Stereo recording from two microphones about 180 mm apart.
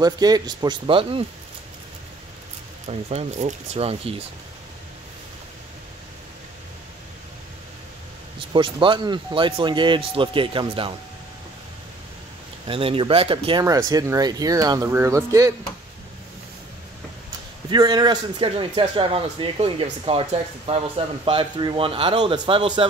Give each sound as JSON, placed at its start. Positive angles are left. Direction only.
{"t": 0.0, "sound": "a man's voice", "side_deg": -20}
{"t": 2.9, "sound": "speech", "side_deg": -35}
{"t": 8.5, "sound": "a man's voice", "side_deg": -30}
{"t": 12.6, "sound": "a man's voice", "side_deg": -30}
{"t": 17.6, "sound": "a man's voice", "side_deg": -20}